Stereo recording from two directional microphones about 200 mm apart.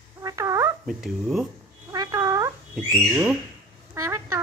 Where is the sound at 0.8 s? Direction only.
Centre (ahead or behind).